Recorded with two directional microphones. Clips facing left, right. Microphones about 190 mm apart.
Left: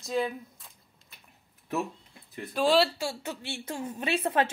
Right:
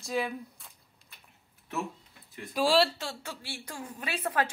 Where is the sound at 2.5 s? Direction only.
Centre (ahead or behind).